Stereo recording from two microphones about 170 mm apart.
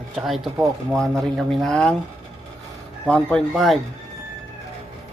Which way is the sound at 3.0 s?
5° left (ahead or behind).